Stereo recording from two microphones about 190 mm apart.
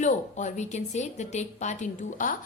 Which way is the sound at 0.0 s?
40° left (ahead or behind).